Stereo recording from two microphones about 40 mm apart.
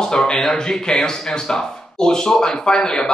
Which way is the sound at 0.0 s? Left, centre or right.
Centre.